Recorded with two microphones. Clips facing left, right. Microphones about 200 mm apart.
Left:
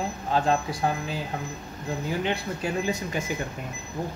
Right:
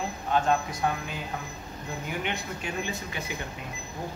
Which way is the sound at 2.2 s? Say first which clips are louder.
Left 5 dB; 40° left (ahead or behind).